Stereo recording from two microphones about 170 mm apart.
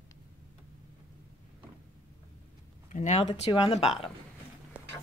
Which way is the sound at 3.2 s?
35° left (ahead or behind).